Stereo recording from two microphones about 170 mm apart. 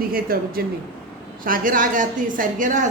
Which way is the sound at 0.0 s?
60° right (ahead or behind).